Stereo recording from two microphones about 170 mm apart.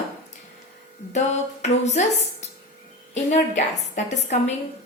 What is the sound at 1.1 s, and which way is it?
Speech, 40° left (ahead or behind).